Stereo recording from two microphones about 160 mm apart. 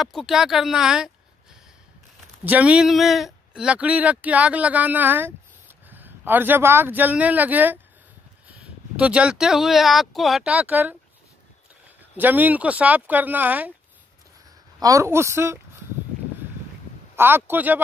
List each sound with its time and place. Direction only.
0.0 s speech: centre (ahead or behind)
2.4 s speech: 10° right (ahead or behind)
12.2 s speech: 10° right (ahead or behind)
14.8 s speech: 20° right (ahead or behind)
17.1 s speech: 15° right (ahead or behind)